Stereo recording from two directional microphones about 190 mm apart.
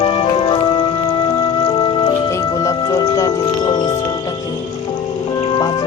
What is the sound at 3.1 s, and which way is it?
Music, 20° left (ahead or behind).